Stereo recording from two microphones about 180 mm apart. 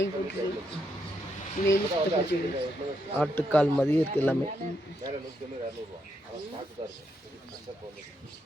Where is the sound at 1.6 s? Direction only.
45° left (ahead or behind).